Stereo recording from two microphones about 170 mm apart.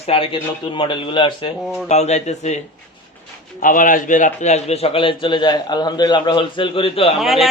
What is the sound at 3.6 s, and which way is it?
A man's voice, 55° left (ahead or behind).